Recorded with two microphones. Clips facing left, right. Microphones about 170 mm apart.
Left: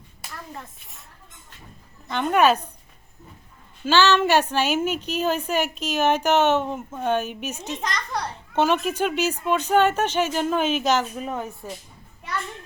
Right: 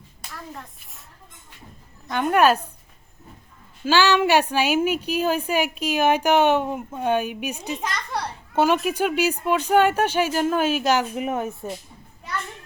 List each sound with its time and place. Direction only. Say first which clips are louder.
0.2 s a child's voice: even; centre (ahead or behind)
2.0 s a woman's voice: right 1 dB; 10° right (ahead or behind)
3.8 s a woman's voice: even; 10° right (ahead or behind)